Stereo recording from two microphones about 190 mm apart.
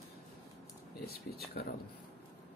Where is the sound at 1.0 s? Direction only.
55° left (ahead or behind).